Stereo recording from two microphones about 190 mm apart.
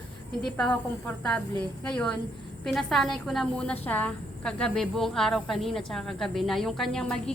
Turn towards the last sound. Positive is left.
turn(degrees=5)  # may be behind; listen again after turning